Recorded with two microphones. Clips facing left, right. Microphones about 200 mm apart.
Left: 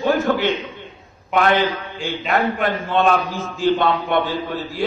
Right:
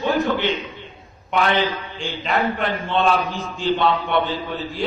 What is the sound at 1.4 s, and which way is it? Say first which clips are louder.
A man's voice: left 3 dB; 50° left (ahead or behind).